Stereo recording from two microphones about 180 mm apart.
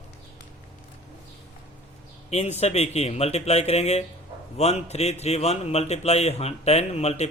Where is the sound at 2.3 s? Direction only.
35° left (ahead or behind).